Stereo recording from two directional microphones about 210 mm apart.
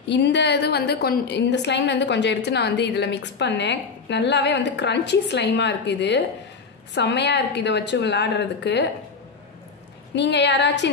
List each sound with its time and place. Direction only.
0.1 s a woman's voice: 55° left (ahead or behind)
10.1 s a woman's voice: 55° left (ahead or behind)